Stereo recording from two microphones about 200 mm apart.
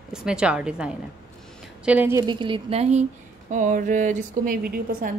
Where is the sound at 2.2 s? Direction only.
25° right (ahead or behind); by 5.1 s 45° right (ahead or behind).